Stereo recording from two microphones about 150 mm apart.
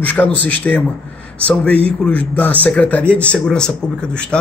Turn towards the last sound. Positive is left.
turn(degrees=5)  # may be behind; listen again after turning